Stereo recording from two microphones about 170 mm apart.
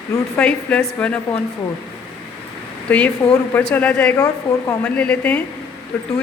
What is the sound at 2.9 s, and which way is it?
Speech, 10° left (ahead or behind).